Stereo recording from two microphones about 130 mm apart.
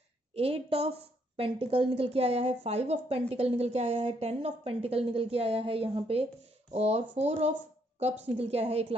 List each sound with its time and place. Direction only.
0.3 s a woman's voice: 50° right (ahead or behind)